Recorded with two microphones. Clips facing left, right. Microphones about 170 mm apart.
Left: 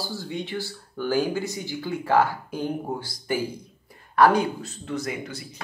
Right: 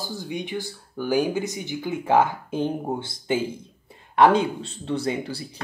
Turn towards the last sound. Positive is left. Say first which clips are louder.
# right 4 dB
turn(degrees=-30)  # may be behind; listen again after turning